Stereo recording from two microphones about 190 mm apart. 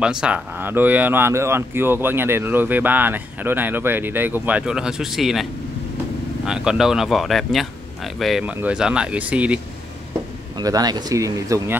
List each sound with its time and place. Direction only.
0.0 s speech: 5° right (ahead or behind)
10.6 s speech: 20° right (ahead or behind)